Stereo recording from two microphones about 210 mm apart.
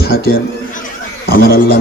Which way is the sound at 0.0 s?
45° left (ahead or behind).